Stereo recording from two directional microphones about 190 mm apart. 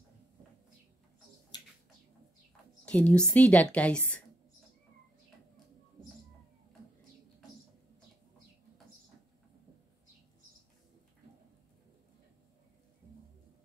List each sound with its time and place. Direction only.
1.5 s bird: 20° left (ahead or behind)
2.8 s a woman's voice: 5° left (ahead or behind)